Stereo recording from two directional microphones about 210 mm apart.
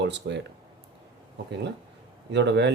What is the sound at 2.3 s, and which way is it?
Speech, 55° right (ahead or behind).